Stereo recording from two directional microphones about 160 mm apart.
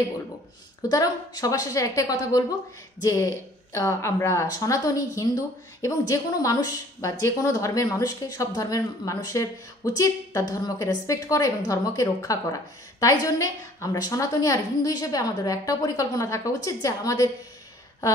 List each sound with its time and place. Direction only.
0.8 s a woman's voice: 25° left (ahead or behind)